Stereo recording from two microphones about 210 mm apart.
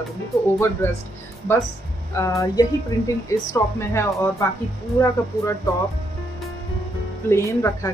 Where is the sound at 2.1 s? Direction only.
15° left (ahead or behind).